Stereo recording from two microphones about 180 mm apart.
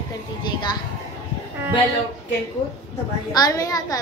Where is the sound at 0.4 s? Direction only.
25° left (ahead or behind).